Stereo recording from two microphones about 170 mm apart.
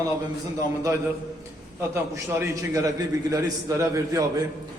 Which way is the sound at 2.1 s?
20° right (ahead or behind).